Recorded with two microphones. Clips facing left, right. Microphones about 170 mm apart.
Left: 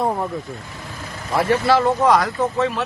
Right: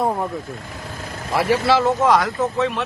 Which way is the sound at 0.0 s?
Centre (ahead or behind).